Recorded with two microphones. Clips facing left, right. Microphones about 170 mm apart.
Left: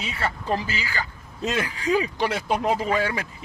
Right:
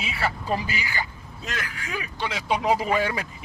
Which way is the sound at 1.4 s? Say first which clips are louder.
Left 9 dB; 25° left (ahead or behind).